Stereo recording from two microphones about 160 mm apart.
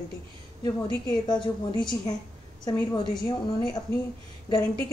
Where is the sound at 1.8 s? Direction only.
25° left (ahead or behind).